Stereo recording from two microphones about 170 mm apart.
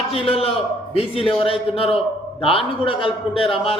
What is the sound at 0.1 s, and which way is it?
A man's voice, 35° left (ahead or behind).